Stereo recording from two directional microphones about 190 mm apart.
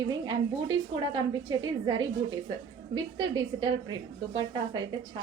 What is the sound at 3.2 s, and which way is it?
A woman's voice, 25° right (ahead or behind).